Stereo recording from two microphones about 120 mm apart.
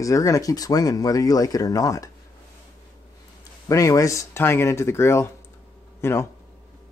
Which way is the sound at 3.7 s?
30° left (ahead or behind).